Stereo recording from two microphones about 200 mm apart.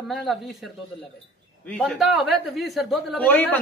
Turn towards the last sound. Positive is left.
turn(degrees=10)  # may be behind; listen again after turning